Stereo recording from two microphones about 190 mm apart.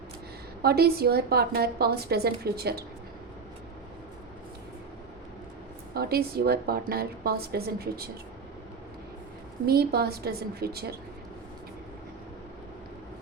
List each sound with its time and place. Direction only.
0.6 s a woman's voice: 55° right (ahead or behind)
5.9 s a woman's voice: 55° right (ahead or behind)
9.6 s a woman's voice: 55° right (ahead or behind)